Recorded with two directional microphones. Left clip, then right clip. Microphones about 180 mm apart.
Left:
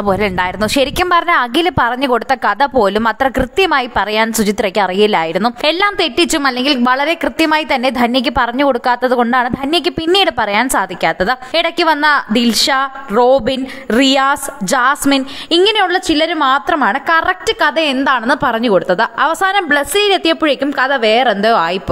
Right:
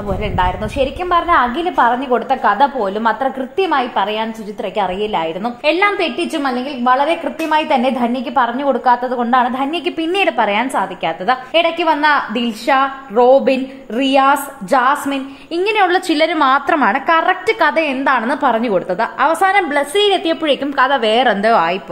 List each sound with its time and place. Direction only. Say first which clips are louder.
0.1 s a woman's voice: left 2 dB; 55° left (ahead or behind)
15.5 s a woman's voice: left 3 dB; 30° left (ahead or behind)
15.9 s a woman's voice: even; 15° left (ahead or behind)
17.8 s a woman's voice: left 2 dB; 25° left (ahead or behind)
20.6 s a woman's voice: right 1 dB; 15° left (ahead or behind)